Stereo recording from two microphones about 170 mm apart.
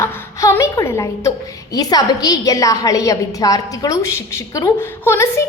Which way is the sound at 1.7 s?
20° left (ahead or behind).